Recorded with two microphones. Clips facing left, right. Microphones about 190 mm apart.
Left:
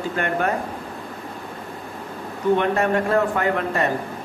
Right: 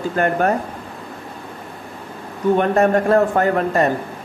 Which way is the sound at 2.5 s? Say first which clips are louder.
Right 5 dB; 45° right (ahead or behind).